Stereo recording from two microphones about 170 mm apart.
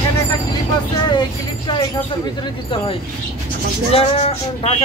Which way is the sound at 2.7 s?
30° left (ahead or behind).